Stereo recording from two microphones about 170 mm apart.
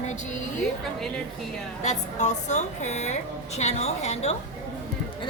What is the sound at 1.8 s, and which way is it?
A woman's voice, 45° left (ahead or behind).